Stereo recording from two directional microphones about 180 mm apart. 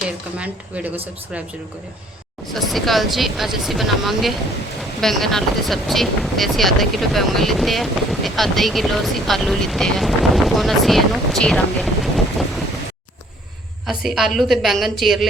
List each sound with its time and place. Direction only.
0.0 s speech: 5° right (ahead or behind)
2.5 s speech: centre (ahead or behind)
13.8 s speech: centre (ahead or behind)